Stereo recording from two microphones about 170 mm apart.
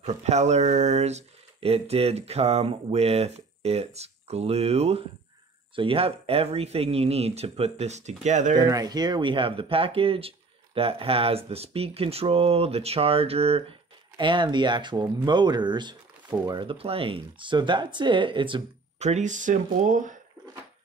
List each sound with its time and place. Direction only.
0.0 s speech: 40° right (ahead or behind)
8.5 s speech: 20° right (ahead or behind)
18.9 s speech: 40° right (ahead or behind)